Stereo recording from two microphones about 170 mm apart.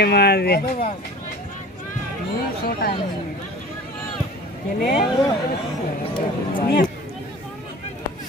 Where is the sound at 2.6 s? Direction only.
65° left (ahead or behind).